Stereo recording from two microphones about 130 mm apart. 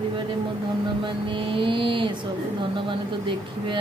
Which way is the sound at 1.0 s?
40° right (ahead or behind).